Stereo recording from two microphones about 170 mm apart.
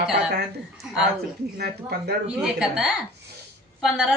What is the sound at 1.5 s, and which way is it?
Speech, 70° right (ahead or behind).